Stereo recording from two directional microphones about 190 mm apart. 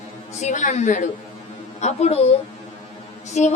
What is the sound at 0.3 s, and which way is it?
A woman's voice, 40° left (ahead or behind).